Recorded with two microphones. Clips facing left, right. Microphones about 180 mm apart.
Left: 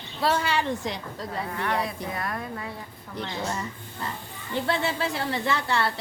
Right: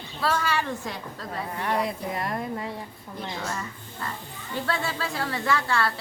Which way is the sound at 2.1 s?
25° right (ahead or behind).